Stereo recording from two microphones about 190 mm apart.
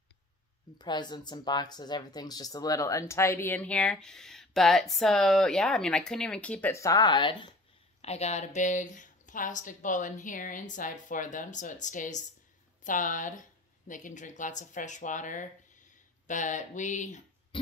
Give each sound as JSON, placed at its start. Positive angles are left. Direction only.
{"t": 0.7, "sound": "speech", "side_deg": 20}